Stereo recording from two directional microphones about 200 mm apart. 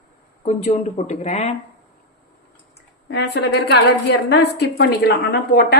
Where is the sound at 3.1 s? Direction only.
60° left (ahead or behind).